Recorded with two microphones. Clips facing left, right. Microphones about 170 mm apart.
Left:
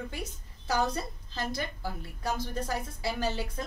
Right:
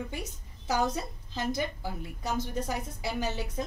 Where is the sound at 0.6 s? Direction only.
15° right (ahead or behind).